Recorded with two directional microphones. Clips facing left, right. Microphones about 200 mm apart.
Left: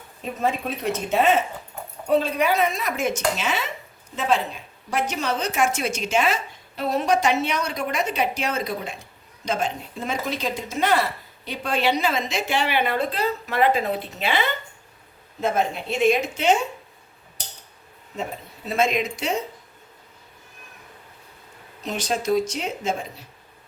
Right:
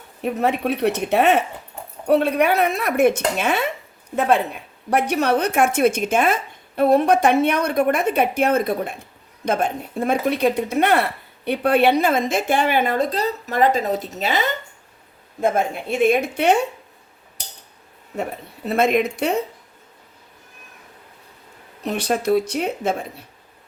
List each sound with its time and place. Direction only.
0.2 s a woman's voice: 65° right (ahead or behind)
18.2 s a woman's voice: 60° right (ahead or behind)
21.8 s a woman's voice: 60° right (ahead or behind)